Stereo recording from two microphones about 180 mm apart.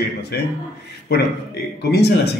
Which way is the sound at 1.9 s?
65° left (ahead or behind).